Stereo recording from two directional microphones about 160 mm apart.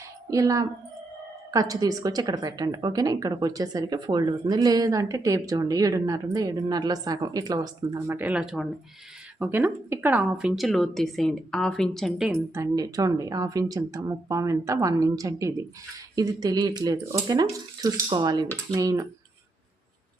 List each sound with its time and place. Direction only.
0.3 s a woman's voice: 20° right (ahead or behind); by 12.3 s centre (ahead or behind)
12.3 s a woman's voice: 20° right (ahead or behind)